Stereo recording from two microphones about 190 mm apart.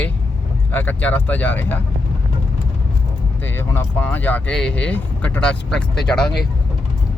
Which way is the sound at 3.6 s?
10° left (ahead or behind).